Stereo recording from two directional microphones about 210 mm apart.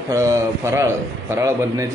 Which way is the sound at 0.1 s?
15° right (ahead or behind).